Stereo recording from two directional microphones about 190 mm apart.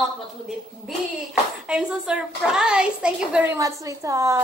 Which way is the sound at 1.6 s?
5° right (ahead or behind).